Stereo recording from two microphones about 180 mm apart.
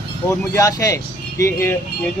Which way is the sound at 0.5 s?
15° left (ahead or behind).